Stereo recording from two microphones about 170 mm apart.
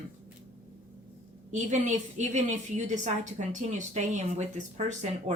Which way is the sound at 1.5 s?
45° right (ahead or behind).